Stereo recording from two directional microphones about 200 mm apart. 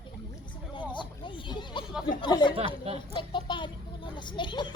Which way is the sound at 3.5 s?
25° left (ahead or behind).